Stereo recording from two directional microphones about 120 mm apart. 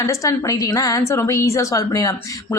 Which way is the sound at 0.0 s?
25° left (ahead or behind).